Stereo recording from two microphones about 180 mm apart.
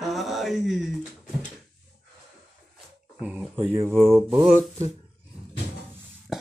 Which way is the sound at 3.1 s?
5° right (ahead or behind).